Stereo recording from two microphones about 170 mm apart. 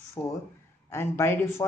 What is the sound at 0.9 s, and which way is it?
Speech, 15° left (ahead or behind).